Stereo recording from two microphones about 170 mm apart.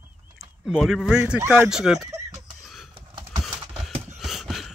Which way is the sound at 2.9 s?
25° right (ahead or behind).